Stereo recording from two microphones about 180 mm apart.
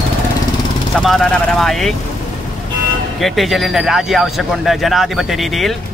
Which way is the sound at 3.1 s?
Centre (ahead or behind).